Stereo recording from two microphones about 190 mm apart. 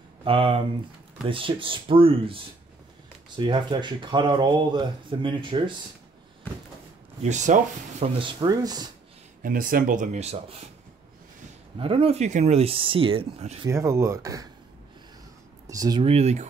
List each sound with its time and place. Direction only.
0.2 s speech: 30° right (ahead or behind)
7.2 s speech: 40° right (ahead or behind)
8.0 s speech: 25° right (ahead or behind)
9.4 s speech: 45° right (ahead or behind)
11.8 s speech: 30° right (ahead or behind)
13.7 s speech: 15° right (ahead or behind)
15.7 s speech: 20° right (ahead or behind)
16.0 s speech: 35° right (ahead or behind)